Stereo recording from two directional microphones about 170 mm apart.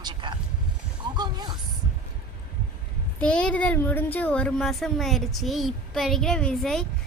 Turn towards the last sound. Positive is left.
turn(degrees=0)  # may be behind; listen again after turning